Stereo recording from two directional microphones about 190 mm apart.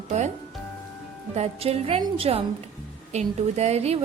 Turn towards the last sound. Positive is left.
turn(degrees=-35)  # may be behind; listen again after turning